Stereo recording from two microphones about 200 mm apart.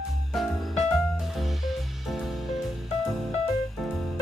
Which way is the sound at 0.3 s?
Centre (ahead or behind).